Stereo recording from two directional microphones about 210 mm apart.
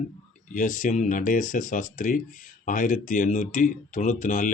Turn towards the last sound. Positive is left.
turn(degrees=40)  # may be behind; listen again after turning